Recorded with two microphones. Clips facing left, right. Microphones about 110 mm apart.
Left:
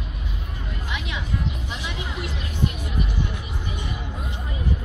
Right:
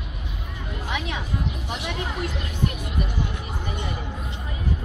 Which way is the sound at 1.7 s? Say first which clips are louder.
Right 3 dB; 60° right (ahead or behind).